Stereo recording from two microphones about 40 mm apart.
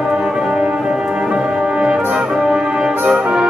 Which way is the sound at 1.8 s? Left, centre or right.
Right.